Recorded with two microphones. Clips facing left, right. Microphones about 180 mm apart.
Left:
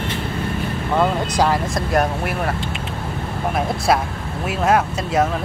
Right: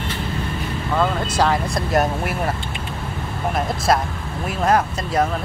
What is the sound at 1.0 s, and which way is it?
Speech, 15° left (ahead or behind).